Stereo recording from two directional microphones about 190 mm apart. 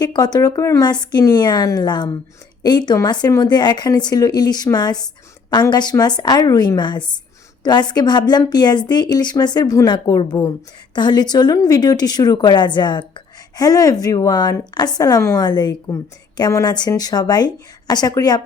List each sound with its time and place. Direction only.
0.0 s a woman's voice: 20° left (ahead or behind)